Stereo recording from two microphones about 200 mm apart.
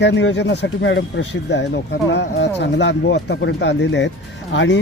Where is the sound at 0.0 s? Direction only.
60° left (ahead or behind).